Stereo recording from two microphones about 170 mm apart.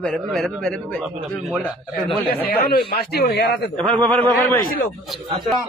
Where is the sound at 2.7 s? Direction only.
65° left (ahead or behind).